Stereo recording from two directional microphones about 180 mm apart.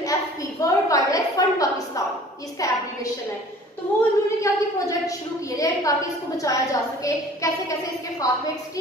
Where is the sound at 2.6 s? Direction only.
20° left (ahead or behind).